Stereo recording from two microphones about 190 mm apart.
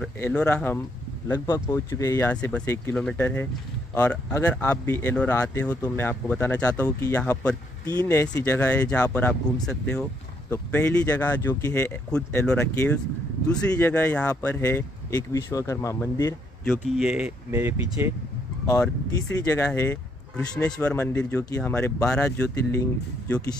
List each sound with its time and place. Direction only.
0.2 s speech: 5° left (ahead or behind)
1.3 s speech: 20° left (ahead or behind)
16.9 s speech: 5° right (ahead or behind)
17.5 s speech: 15° right (ahead or behind)
18.7 s speech: 15° left (ahead or behind)